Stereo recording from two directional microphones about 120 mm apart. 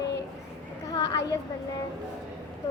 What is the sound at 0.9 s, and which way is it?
Child singing, 30° left (ahead or behind).